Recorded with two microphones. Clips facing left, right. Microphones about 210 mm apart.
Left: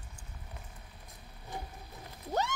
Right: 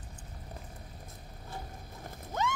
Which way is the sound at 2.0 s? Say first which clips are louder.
Right 2 dB; 50° right (ahead or behind).